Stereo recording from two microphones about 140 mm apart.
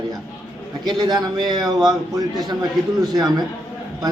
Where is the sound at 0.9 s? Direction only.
30° right (ahead or behind).